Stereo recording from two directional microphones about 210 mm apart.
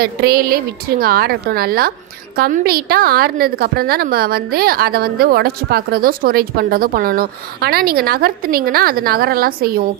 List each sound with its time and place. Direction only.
0.0 s a woman's voice: 45° right (ahead or behind)